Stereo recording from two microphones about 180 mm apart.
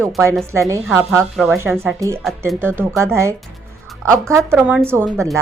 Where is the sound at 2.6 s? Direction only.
10° right (ahead or behind).